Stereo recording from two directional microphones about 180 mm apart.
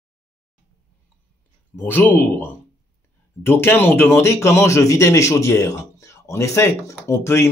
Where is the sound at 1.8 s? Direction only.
10° left (ahead or behind).